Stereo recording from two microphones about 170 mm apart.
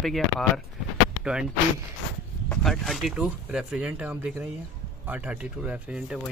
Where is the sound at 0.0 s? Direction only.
Centre (ahead or behind).